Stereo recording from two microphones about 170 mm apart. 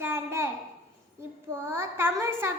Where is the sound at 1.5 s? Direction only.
15° right (ahead or behind).